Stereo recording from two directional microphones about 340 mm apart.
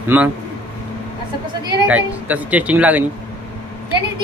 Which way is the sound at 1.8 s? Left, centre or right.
Centre.